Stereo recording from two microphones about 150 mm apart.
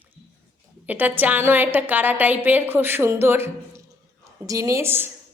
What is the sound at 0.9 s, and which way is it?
A woman's voice, 10° right (ahead or behind).